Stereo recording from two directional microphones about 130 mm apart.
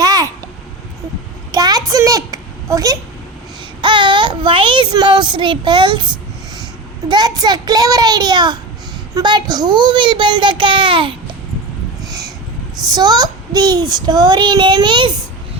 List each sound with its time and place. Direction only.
0.0 s babbling: 30° right (ahead or behind)
1.5 s a sound: 30° right (ahead or behind)
3.8 s speech: 40° right (ahead or behind)
7.1 s a child's voice: 30° right (ahead or behind)
12.0 s a sound: 30° right (ahead or behind)
12.8 s a child's voice: 30° right (ahead or behind)